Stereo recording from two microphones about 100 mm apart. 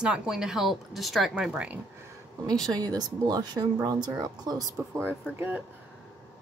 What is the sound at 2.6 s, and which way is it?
Speech, 40° right (ahead or behind).